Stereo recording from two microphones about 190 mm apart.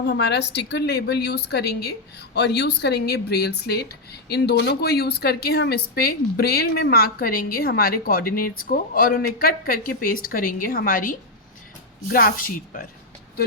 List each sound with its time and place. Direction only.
0.0 s a woman's voice: 65° left (ahead or behind); by 12.9 s 45° left (ahead or behind)